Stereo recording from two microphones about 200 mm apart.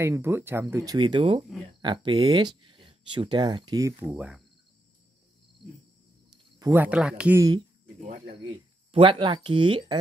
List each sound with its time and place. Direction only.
0.0 s speech: 15° right (ahead or behind)
4.1 s cricket: 5° right (ahead or behind)
6.6 s speech: 10° right (ahead or behind)
8.9 s speech: 25° right (ahead or behind)